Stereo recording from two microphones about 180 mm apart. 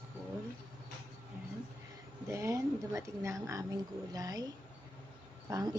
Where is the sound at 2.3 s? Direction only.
15° right (ahead or behind).